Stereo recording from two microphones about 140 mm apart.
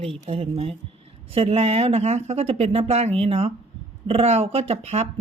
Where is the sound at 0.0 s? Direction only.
45° right (ahead or behind).